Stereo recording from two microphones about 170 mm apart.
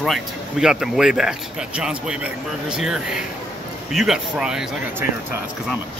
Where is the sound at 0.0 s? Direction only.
Centre (ahead or behind).